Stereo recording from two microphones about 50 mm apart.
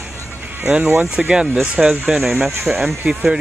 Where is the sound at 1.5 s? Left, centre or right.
Right.